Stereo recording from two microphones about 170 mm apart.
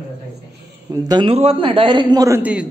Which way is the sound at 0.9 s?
25° right (ahead or behind).